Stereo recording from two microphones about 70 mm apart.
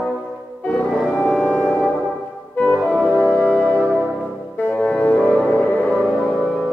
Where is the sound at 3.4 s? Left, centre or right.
Centre.